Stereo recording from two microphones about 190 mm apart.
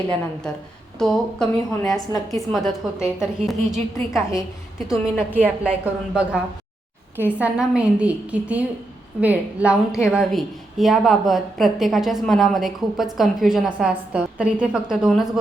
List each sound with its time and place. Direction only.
0.9 s a woman's voice: centre (ahead or behind)
1.9 s a woman's voice: 20° left (ahead or behind)
2.5 s a woman's voice: centre (ahead or behind)